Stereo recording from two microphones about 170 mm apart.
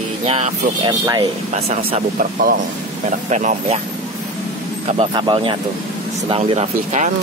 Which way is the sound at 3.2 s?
45° right (ahead or behind).